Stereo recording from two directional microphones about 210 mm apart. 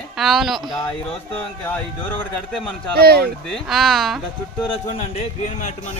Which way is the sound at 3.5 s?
Centre (ahead or behind).